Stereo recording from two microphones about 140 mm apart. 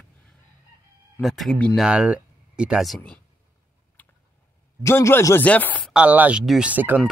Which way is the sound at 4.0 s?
10° left (ahead or behind).